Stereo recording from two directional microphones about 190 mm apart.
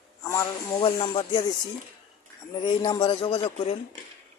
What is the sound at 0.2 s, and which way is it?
A man's voice, 15° left (ahead or behind).